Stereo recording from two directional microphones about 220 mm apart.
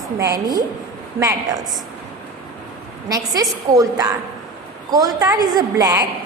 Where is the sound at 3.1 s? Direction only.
15° right (ahead or behind).